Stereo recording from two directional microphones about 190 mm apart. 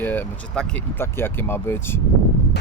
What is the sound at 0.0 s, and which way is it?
Speech, 10° left (ahead or behind).